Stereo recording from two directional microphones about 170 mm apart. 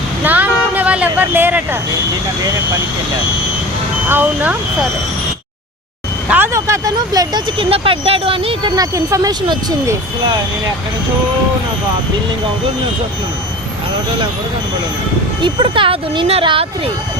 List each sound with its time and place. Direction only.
0.3 s vehicle: 10° right (ahead or behind)
4.1 s speech: 10° right (ahead or behind)
6.2 s speech: 10° right (ahead or behind); by 8.7 s 30° right (ahead or behind)
8.7 s speech: 20° right (ahead or behind)
15.4 s speech: 30° right (ahead or behind)